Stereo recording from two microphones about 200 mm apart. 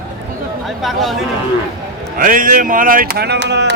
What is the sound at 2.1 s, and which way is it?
Speech, 45° right (ahead or behind).